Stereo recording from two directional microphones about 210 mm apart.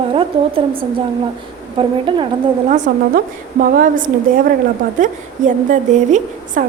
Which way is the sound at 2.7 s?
40° right (ahead or behind).